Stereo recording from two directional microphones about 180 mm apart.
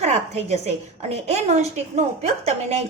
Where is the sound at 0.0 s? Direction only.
35° right (ahead or behind).